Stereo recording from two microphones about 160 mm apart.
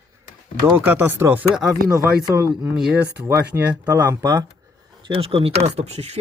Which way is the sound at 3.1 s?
15° right (ahead or behind).